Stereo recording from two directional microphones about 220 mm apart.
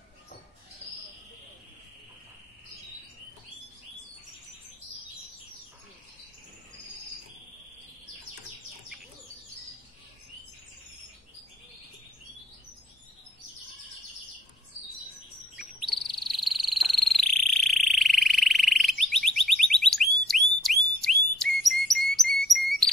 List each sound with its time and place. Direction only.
15.5 s chirp: centre (ahead or behind)
16.2 s frog: centre (ahead or behind)
21.8 s chirp: centre (ahead or behind)